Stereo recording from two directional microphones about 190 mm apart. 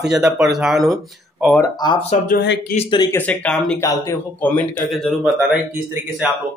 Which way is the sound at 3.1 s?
5° left (ahead or behind).